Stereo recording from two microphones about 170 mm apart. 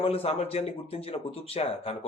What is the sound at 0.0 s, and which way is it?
Speech, 35° left (ahead or behind).